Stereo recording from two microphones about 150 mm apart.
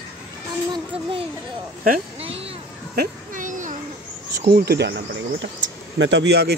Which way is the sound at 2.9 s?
60° right (ahead or behind).